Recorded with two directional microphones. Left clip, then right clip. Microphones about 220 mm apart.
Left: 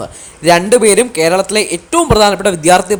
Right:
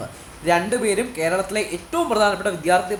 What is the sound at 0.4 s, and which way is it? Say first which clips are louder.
Speech: left 11 dB; 40° left (ahead or behind).